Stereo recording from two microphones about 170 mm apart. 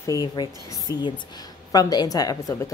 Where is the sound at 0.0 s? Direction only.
20° left (ahead or behind).